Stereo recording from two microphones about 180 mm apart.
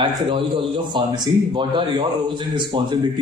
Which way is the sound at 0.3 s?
30° right (ahead or behind).